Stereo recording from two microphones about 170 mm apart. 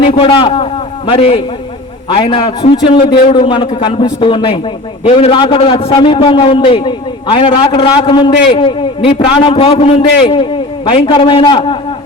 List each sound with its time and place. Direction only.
0.0 s a man's voice: 30° left (ahead or behind)